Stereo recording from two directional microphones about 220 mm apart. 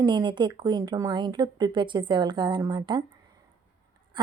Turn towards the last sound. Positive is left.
turn(degrees=-20)  # may be behind; listen again after turning